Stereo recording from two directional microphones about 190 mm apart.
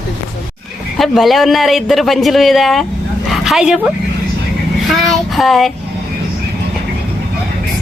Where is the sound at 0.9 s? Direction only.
Centre (ahead or behind).